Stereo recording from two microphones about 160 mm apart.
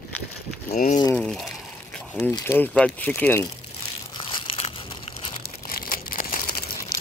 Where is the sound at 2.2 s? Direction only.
15° left (ahead or behind).